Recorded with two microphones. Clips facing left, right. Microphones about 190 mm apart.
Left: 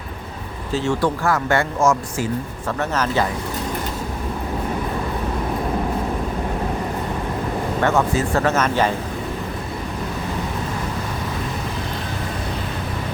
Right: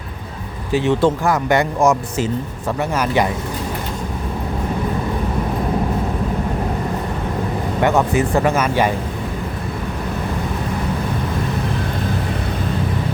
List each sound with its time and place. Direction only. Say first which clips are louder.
0.7 s speech: right 5 dB; 20° right (ahead or behind)
7.8 s speech: right 3 dB; 15° right (ahead or behind)